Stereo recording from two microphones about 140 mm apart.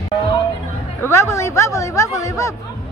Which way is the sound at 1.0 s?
20° left (ahead or behind).